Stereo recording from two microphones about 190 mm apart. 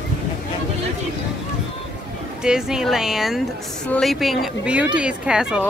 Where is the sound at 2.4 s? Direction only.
5° right (ahead or behind).